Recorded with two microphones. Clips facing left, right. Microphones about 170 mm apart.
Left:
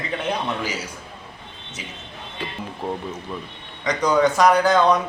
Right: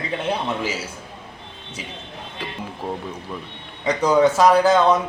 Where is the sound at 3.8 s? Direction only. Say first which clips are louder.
Right 2 dB; 10° right (ahead or behind).